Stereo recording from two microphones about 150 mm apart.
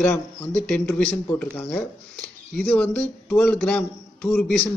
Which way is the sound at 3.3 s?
15° left (ahead or behind).